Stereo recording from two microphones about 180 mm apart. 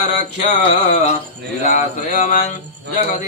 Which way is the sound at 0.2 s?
40° left (ahead or behind).